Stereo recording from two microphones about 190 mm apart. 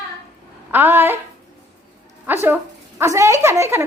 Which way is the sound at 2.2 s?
10° right (ahead or behind).